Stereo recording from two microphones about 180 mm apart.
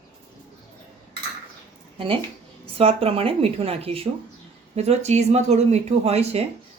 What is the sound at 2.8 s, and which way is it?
Speech, 35° right (ahead or behind).